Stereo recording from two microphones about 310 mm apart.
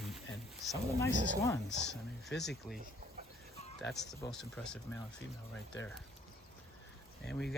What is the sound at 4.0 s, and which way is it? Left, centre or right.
Speech, centre.